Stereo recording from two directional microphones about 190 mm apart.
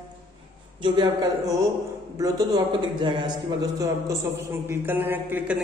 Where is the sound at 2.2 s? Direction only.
20° right (ahead or behind).